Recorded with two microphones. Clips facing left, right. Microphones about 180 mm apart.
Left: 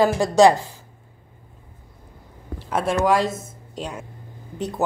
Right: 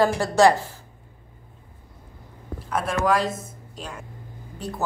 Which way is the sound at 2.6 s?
25° left (ahead or behind).